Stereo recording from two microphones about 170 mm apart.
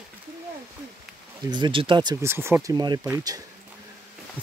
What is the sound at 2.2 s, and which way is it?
Speech, 15° right (ahead or behind).